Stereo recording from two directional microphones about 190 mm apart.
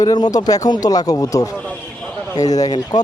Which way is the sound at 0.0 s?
20° left (ahead or behind).